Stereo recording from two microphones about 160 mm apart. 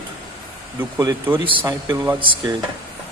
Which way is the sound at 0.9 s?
25° right (ahead or behind).